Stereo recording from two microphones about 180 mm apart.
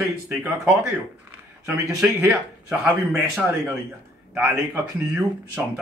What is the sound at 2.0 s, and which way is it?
Speech, 10° right (ahead or behind).